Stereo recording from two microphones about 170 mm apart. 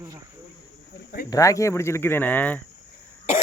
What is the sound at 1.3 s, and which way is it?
Speech, 20° left (ahead or behind).